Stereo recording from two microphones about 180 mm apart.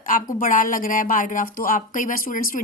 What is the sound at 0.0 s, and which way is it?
A woman's voice, 50° left (ahead or behind).